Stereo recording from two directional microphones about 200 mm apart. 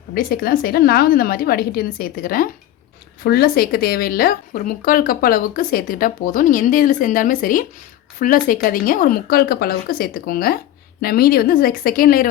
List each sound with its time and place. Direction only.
0.1 s speech: 50° left (ahead or behind)